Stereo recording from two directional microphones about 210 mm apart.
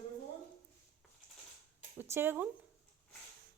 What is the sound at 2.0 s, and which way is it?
Speech, 10° right (ahead or behind).